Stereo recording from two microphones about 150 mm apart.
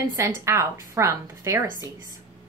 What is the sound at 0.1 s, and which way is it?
A woman's voice, 20° right (ahead or behind).